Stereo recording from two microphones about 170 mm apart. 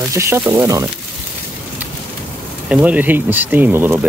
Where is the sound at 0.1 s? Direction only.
15° right (ahead or behind).